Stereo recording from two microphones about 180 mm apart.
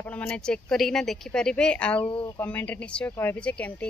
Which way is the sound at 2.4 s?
10° left (ahead or behind).